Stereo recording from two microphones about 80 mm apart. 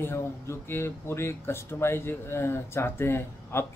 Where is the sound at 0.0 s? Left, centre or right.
Left.